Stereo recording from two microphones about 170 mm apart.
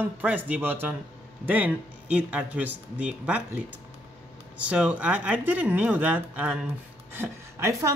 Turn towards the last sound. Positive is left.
turn(degrees=-15)  # may be behind; listen again after turning